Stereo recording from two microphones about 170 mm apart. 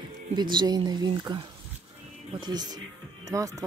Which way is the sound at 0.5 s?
25° right (ahead or behind).